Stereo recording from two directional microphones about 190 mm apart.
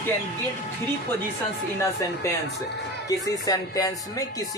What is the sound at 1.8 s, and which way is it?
Speech, 15° left (ahead or behind).